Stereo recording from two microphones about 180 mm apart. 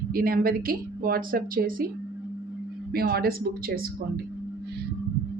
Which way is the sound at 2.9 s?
55° right (ahead or behind).